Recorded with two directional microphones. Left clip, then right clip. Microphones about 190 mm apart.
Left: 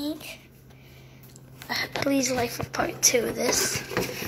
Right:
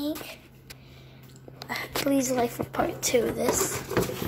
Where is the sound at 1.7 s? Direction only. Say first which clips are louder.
Left 1 dB; 10° right (ahead or behind).